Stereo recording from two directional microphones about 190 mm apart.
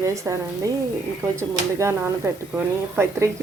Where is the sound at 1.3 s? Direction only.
15° right (ahead or behind).